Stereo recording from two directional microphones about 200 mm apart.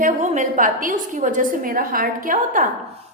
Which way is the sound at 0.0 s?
40° right (ahead or behind).